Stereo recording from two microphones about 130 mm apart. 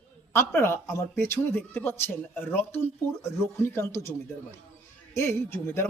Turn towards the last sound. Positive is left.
turn(degrees=15)  # may be behind; listen again after turning